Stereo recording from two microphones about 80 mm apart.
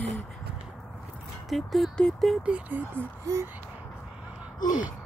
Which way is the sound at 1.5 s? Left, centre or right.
Centre.